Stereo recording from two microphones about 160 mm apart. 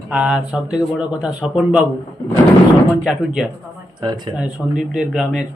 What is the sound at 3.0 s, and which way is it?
Speech, 5° right (ahead or behind).